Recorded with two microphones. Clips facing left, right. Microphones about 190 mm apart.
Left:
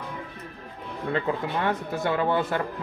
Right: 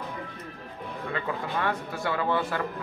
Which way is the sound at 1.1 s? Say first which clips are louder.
Left 4 dB; 25° left (ahead or behind).